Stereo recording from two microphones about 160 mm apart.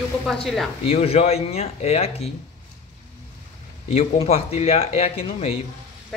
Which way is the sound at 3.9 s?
40° left (ahead or behind).